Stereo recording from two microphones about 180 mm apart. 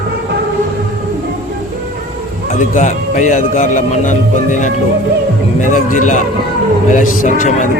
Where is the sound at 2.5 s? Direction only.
45° left (ahead or behind).